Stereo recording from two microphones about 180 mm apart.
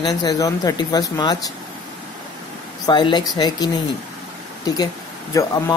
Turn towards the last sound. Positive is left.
turn(degrees=20)  # may be behind; listen again after turning